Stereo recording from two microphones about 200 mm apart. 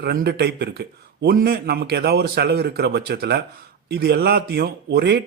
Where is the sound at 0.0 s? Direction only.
50° right (ahead or behind).